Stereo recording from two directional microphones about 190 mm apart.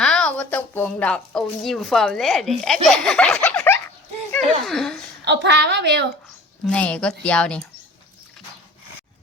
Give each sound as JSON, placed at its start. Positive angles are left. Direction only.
{"t": 0.0, "sound": "a woman's voice", "side_deg": 5}
{"t": 2.8, "sound": "laughter", "side_deg": 0}
{"t": 4.3, "sound": "speech", "side_deg": 0}
{"t": 5.2, "sound": "a woman's voice", "side_deg": -65}
{"t": 6.7, "sound": "speech", "side_deg": 5}